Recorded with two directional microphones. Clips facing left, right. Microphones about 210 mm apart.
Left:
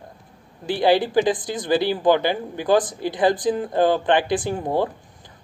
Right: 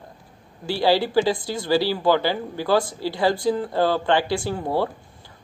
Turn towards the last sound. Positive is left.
turn(degrees=20)  # may be behind; listen again after turning